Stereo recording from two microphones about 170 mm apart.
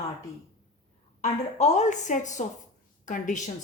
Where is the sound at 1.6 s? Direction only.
45° left (ahead or behind).